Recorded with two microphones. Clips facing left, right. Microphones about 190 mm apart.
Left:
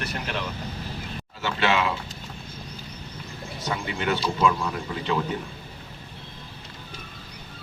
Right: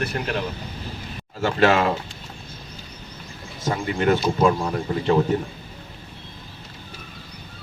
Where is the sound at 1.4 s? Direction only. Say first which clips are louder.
Right 6 dB; 45° right (ahead or behind).